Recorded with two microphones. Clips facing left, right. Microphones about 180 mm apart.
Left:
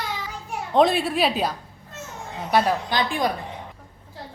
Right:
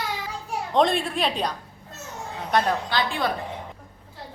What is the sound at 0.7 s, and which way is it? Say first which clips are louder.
A woman's voice: left 3 dB; 5° left (ahead or behind).